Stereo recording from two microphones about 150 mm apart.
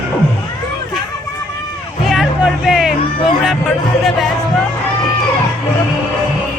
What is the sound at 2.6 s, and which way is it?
Music, centre (ahead or behind).